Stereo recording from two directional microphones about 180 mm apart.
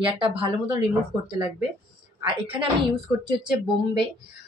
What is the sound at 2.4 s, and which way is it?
Speech, 30° right (ahead or behind).